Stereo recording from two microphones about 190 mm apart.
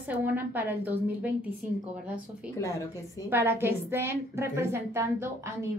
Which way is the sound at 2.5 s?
15° left (ahead or behind).